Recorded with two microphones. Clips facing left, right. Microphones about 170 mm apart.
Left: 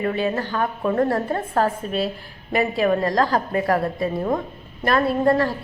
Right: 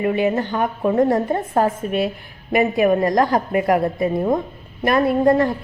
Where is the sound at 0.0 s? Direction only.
15° right (ahead or behind).